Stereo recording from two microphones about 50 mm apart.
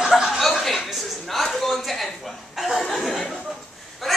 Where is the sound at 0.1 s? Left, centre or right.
Centre.